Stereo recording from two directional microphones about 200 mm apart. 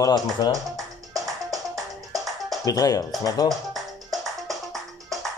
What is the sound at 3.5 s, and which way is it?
Music, centre (ahead or behind).